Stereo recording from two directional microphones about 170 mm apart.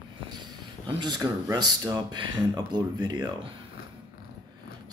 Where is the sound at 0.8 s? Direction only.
25° right (ahead or behind).